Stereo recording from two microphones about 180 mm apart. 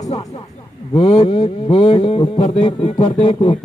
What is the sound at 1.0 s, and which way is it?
Speech, 40° left (ahead or behind).